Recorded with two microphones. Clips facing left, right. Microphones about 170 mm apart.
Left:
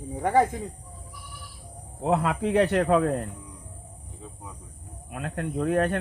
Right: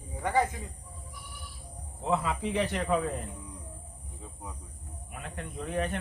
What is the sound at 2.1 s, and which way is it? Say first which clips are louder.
Speech: left 5 dB; 60° left (ahead or behind).